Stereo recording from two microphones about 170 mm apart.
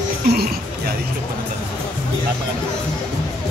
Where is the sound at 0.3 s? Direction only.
65° right (ahead or behind).